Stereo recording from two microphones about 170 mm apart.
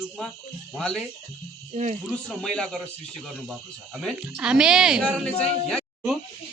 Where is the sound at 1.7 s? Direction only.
40° right (ahead or behind).